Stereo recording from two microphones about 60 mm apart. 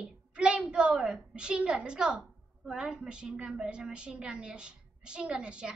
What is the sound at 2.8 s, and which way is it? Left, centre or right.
A woman's voice, centre.